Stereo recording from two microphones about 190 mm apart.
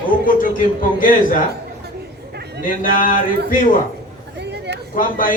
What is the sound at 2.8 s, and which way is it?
Speech, 45° left (ahead or behind).